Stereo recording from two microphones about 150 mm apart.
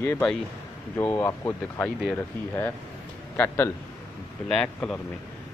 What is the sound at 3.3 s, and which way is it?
Speech, 10° left (ahead or behind).